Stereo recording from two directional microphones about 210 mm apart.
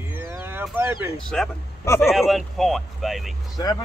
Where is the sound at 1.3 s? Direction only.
10° left (ahead or behind).